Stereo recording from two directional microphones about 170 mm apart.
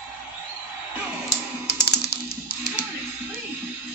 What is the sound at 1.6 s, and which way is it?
Typing, 75° left (ahead or behind).